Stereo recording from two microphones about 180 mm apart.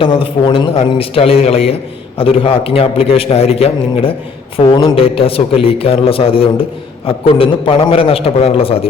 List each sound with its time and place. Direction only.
0.0 s a man's voice: 30° left (ahead or behind)